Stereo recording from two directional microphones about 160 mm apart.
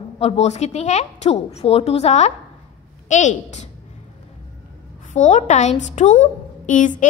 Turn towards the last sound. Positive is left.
turn(degrees=50)  # may be behind; listen again after turning